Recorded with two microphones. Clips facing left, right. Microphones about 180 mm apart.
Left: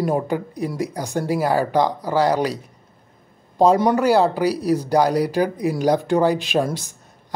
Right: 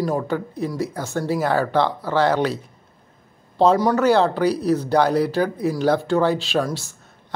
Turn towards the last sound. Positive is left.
turn(degrees=15)  # may be behind; listen again after turning